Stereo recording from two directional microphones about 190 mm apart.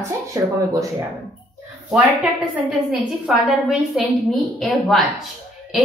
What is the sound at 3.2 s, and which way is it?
A woman's voice, 5° right (ahead or behind).